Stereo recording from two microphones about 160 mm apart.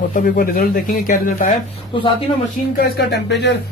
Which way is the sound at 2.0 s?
30° left (ahead or behind).